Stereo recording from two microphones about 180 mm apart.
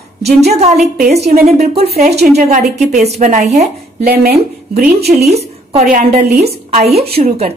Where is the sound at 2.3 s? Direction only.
40° right (ahead or behind).